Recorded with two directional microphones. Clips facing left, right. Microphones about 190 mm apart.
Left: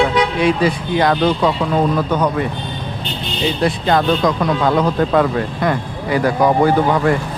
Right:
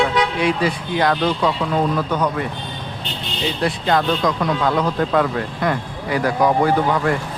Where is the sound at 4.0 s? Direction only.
45° left (ahead or behind).